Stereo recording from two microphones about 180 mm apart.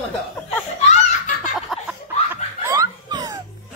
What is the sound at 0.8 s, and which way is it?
Belly laugh, 40° left (ahead or behind).